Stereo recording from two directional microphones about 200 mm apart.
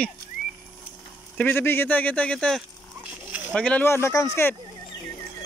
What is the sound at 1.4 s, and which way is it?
Speech, 10° left (ahead or behind).